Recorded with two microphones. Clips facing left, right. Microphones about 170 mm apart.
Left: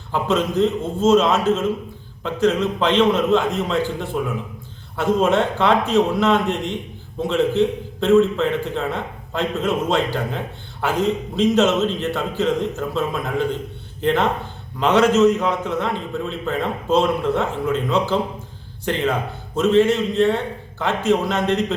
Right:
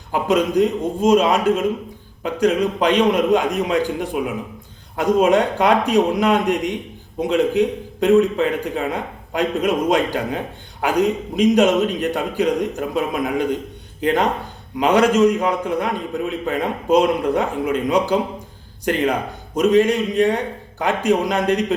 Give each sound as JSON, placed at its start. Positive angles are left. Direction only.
{"t": 0.1, "sound": "a man's voice", "side_deg": -15}
{"t": 14.8, "sound": "a man's voice", "side_deg": -10}